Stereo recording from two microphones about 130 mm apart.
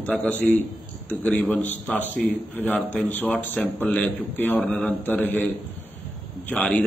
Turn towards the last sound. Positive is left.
turn(degrees=10)  # may be behind; listen again after turning